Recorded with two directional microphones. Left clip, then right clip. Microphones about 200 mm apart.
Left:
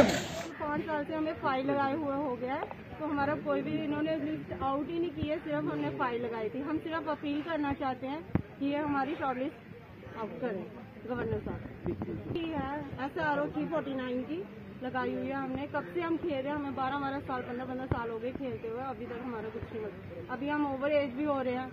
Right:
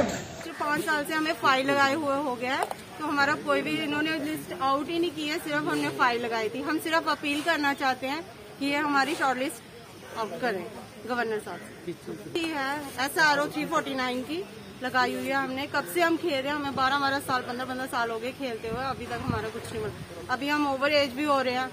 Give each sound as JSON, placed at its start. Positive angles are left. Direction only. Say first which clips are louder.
{"t": 0.7, "sound": "speech", "louder": "right 7 dB", "side_deg": -35}
{"t": 12.5, "sound": "a woman's voice", "louder": "right 7 dB", "side_deg": -30}
{"t": 14.8, "sound": "speech", "louder": "right 8 dB", "side_deg": -40}
{"t": 20.2, "sound": "speech", "louder": "right 7 dB", "side_deg": -35}